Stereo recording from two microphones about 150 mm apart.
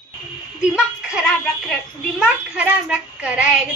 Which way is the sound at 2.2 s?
10° right (ahead or behind).